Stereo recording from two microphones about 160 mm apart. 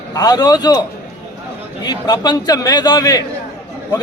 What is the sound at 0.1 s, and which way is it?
A man's voice, 25° left (ahead or behind).